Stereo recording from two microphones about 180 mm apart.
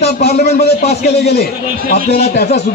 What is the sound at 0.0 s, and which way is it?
A man's voice, 60° left (ahead or behind).